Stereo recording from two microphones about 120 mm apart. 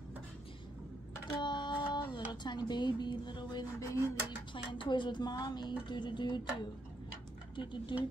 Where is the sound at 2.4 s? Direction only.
35° left (ahead or behind).